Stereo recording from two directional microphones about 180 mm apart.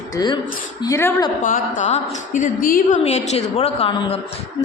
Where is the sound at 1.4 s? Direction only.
45° left (ahead or behind).